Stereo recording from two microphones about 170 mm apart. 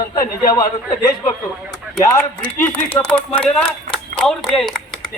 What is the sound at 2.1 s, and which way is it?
Speech, 10° left (ahead or behind).